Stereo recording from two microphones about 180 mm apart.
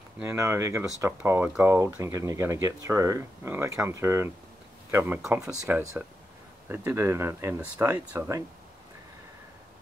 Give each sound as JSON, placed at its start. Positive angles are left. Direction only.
{"t": 0.2, "sound": "speech", "side_deg": -15}